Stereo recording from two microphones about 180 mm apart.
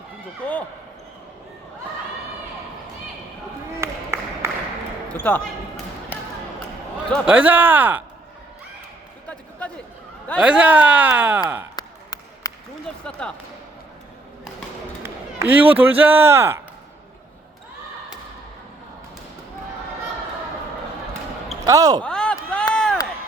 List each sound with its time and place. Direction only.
3.8 s a sound: 15° right (ahead or behind)
5.1 s speech: 10° left (ahead or behind)
7.3 s speech: 10° right (ahead or behind)
9.2 s a sound: 5° left (ahead or behind)
10.4 s speech: 5° right (ahead or behind)
11.8 s basketball bounce: 20° left (ahead or behind)
13.1 s speech: 5° left (ahead or behind)
15.0 s a sound: 10° right (ahead or behind)
15.7 s speech: 10° right (ahead or behind)
21.7 s speech: 20° right (ahead or behind)
22.0 s chop: 5° left (ahead or behind)
22.7 s run: 5° left (ahead or behind)